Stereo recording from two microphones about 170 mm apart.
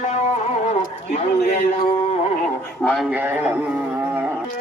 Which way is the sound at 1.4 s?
60° left (ahead or behind).